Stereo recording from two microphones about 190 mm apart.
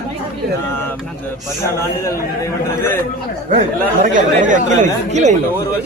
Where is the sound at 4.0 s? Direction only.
40° right (ahead or behind).